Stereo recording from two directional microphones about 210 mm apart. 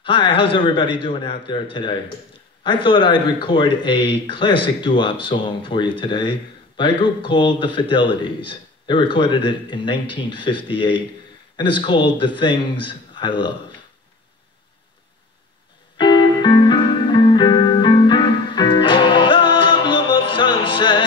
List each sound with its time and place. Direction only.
0.0 s a man's voice: 25° left (ahead or behind)
16.0 s music: 20° left (ahead or behind)